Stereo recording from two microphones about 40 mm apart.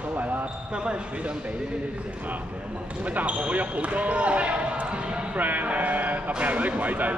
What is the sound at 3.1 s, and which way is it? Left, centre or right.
Speech, right.